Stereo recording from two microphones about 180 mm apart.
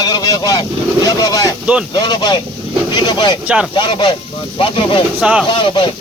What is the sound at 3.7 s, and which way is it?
Speech, 25° left (ahead or behind).